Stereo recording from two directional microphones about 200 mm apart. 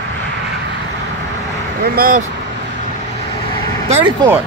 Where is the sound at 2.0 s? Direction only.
45° right (ahead or behind).